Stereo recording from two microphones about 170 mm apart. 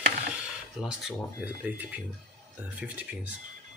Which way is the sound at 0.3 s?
5° right (ahead or behind).